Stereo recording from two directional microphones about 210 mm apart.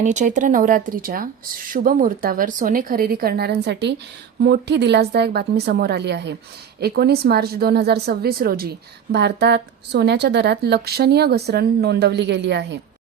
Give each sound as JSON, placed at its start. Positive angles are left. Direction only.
{"t": 0.0, "sound": "a woman's voice", "side_deg": -35}